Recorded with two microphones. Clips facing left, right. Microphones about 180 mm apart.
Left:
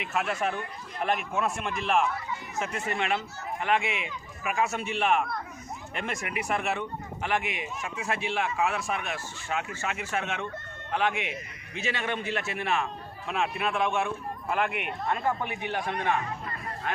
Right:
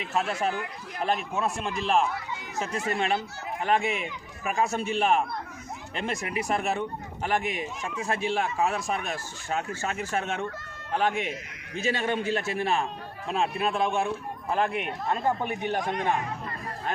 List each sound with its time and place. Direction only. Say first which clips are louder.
0.0 s speech: right 1 dB; 30° right (ahead or behind)
0.5 s speech: right 2 dB; 90° right
1.0 s speech: right 1 dB; 30° right (ahead or behind)
15.4 s speech: right 4 dB; 40° right (ahead or behind)